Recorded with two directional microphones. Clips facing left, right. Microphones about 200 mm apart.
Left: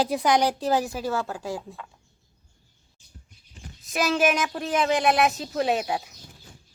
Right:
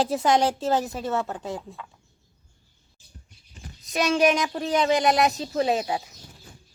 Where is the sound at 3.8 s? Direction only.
Centre (ahead or behind).